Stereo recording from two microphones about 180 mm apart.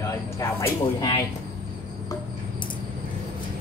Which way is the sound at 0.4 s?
15° left (ahead or behind).